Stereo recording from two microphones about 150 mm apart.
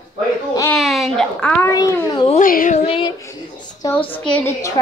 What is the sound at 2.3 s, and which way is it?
Speech, 65° left (ahead or behind).